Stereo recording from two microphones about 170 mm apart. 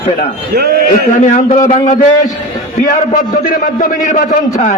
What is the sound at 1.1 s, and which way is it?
Speech, 50° left (ahead or behind).